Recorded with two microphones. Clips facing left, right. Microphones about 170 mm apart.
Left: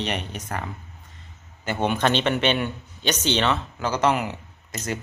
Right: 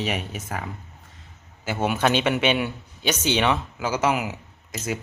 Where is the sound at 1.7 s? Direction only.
5° right (ahead or behind).